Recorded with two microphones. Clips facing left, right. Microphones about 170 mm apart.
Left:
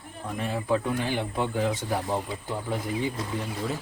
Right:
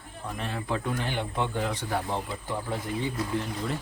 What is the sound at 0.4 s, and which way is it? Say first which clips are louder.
Speech: left 5 dB; 10° left (ahead or behind).